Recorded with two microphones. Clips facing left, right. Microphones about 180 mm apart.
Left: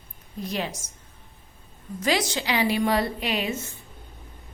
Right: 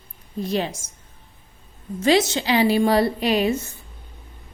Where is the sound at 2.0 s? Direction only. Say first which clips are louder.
Right 7 dB; 25° right (ahead or behind).